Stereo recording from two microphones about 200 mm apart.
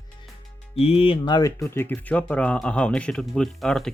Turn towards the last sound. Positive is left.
turn(degrees=0)  # may be behind; listen again after turning